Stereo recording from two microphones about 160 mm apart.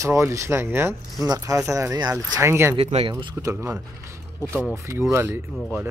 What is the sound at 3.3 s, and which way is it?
Speech, 15° right (ahead or behind).